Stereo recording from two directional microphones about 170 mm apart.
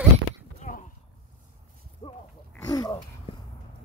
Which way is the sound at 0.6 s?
50° left (ahead or behind).